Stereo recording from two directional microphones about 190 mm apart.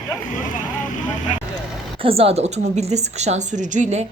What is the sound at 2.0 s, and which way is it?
Speech, 30° right (ahead or behind).